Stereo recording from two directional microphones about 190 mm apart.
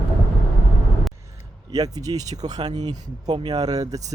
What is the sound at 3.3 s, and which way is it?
Speech, 20° right (ahead or behind).